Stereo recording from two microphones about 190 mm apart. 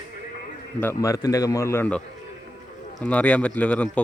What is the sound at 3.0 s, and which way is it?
Speech, 5° left (ahead or behind).